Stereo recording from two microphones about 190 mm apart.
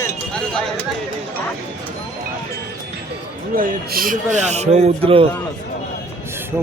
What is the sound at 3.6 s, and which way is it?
Speech, 50° right (ahead or behind).